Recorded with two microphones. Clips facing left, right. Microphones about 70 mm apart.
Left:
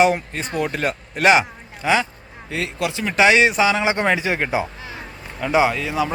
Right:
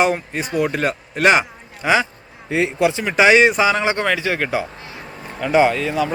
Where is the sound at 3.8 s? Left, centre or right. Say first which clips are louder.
Even; centre.